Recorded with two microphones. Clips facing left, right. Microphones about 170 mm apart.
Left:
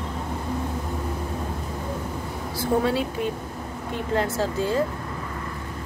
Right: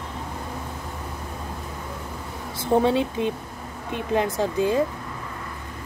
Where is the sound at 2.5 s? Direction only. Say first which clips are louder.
Right 3 dB; 25° right (ahead or behind).